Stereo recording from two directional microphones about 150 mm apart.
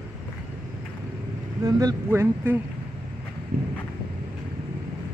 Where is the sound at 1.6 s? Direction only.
20° right (ahead or behind).